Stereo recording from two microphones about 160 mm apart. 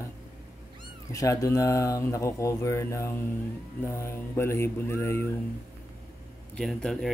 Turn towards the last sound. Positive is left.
turn(degrees=0)  # may be behind; listen again after turning